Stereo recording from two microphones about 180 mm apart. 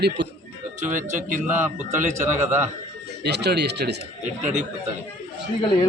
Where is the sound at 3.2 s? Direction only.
65° right (ahead or behind).